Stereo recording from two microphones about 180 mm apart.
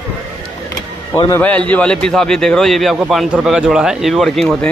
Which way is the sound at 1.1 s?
20° left (ahead or behind).